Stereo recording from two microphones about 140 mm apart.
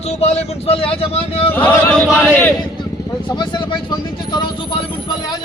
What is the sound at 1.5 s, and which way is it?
Speech, 10° left (ahead or behind).